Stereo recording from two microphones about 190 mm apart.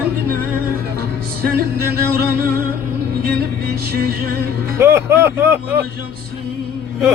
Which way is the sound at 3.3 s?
55° right (ahead or behind).